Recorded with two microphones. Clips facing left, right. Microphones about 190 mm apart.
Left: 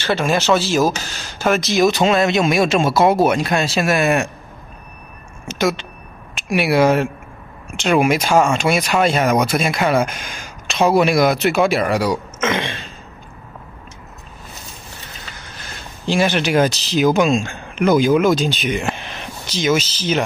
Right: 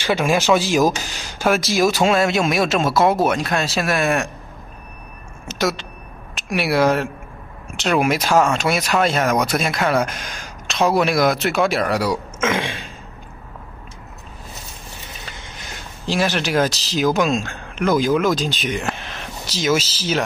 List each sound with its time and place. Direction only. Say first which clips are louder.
0.0 s speech: even; 10° right (ahead or behind)
5.5 s speech: left 3 dB; centre (ahead or behind)
16.1 s speech: left 3 dB; centre (ahead or behind)